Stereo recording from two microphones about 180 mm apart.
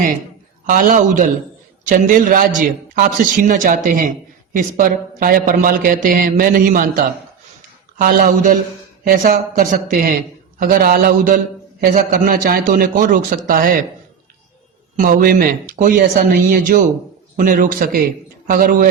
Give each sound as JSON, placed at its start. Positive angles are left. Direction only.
{"t": 0.7, "sound": "a man's voice", "side_deg": -50}
{"t": 14.9, "sound": "a man's voice", "side_deg": -50}